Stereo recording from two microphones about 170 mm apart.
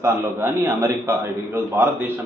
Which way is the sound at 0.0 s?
15° right (ahead or behind).